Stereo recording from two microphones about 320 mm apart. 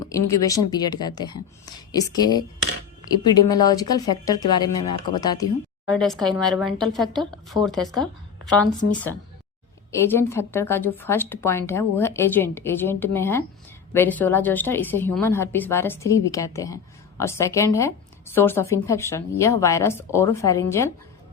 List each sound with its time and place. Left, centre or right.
0.0 s a woman's voice: centre
6.0 s a woman's voice: centre
8.8 s speech: left
10.1 s a woman's voice: centre